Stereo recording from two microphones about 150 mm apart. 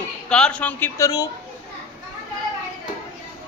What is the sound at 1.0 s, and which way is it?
Speech, 25° left (ahead or behind).